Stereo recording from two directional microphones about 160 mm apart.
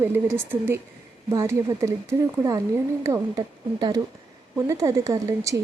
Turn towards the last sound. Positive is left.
turn(degrees=-20)  # may be behind; listen again after turning